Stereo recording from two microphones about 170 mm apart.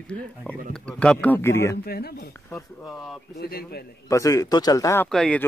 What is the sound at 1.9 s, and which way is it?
Speech, 65° left (ahead or behind).